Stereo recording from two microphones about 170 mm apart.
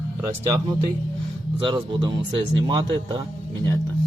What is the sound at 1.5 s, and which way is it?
Speech, 30° right (ahead or behind).